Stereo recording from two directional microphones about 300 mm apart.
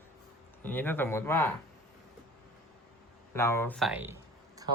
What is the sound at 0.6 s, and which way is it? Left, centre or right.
Speech, centre.